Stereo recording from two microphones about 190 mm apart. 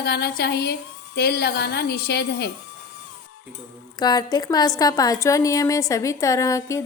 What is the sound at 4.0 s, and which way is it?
A woman's voice, 20° left (ahead or behind).